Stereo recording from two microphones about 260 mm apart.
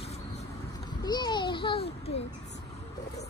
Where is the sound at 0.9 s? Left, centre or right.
Centre.